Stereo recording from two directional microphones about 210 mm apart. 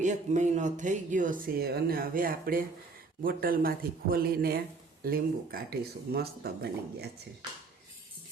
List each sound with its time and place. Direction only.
0.0 s speech: 35° right (ahead or behind)